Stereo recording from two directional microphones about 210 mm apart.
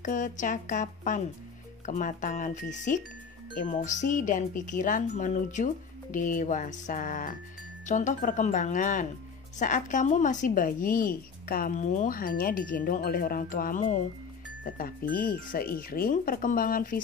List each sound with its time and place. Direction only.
0.0 s a woman's voice: 40° left (ahead or behind)